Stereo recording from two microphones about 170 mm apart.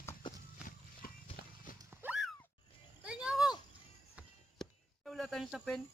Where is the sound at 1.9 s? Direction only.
10° right (ahead or behind).